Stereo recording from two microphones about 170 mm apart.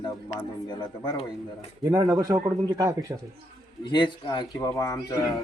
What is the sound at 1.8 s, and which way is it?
A man's voice, 20° right (ahead or behind).